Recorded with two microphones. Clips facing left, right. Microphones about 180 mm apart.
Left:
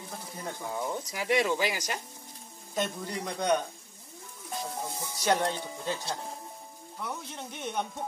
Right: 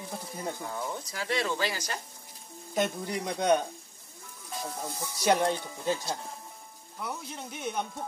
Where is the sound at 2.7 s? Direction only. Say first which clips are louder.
Right 3 dB; 15° right (ahead or behind).